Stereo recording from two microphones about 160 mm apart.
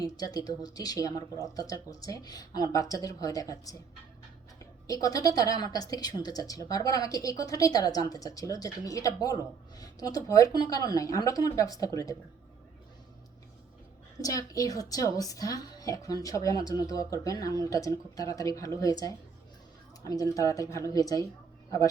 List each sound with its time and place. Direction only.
0.0 s a woman's voice: 25° left (ahead or behind)
4.9 s a woman's voice: 20° left (ahead or behind)
14.2 s a woman's voice: 20° left (ahead or behind)